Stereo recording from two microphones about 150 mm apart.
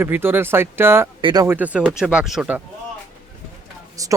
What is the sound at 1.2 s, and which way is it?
Speech, 25° right (ahead or behind).